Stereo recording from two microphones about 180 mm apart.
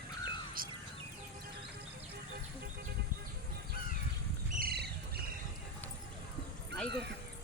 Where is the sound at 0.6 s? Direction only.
55° right (ahead or behind).